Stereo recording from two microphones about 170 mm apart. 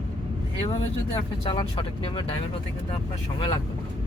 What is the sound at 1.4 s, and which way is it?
Speech, 30° left (ahead or behind).